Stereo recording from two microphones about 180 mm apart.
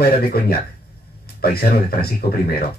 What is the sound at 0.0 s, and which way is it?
Speech, 60° left (ahead or behind).